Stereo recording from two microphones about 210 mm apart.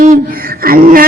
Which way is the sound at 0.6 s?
45° right (ahead or behind).